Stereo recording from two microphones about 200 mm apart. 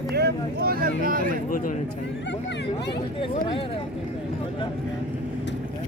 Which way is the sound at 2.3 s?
60° left (ahead or behind).